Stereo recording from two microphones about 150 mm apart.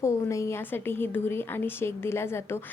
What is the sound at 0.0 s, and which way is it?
A woman's voice, 20° left (ahead or behind).